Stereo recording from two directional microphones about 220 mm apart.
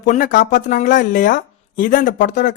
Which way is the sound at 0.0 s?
35° left (ahead or behind).